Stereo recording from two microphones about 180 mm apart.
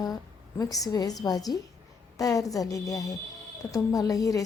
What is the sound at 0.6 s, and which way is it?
A woman's voice, 20° left (ahead or behind).